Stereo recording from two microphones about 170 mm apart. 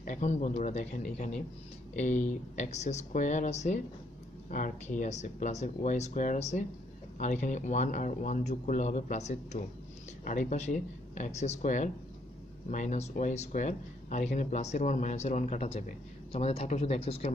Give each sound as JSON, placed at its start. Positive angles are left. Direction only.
{"t": 0.0, "sound": "speech", "side_deg": 45}